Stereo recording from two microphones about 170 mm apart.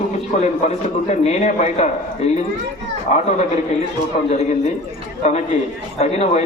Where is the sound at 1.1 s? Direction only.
40° left (ahead or behind).